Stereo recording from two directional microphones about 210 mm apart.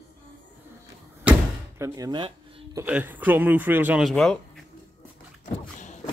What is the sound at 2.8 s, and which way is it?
Speech, 10° right (ahead or behind).